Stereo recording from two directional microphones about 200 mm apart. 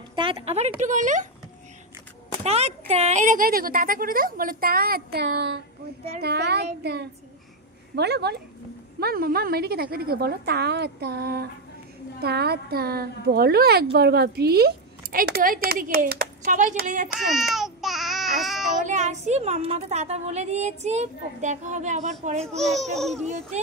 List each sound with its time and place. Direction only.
0.1 s a woman's voice: 25° right (ahead or behind)
2.4 s a woman's voice: 30° right (ahead or behind)
17.3 s baby cry: centre (ahead or behind)
18.8 s a woman's voice: 40° right (ahead or behind)
22.6 s a child's voice: centre (ahead or behind)
23.2 s a woman's voice: 35° right (ahead or behind)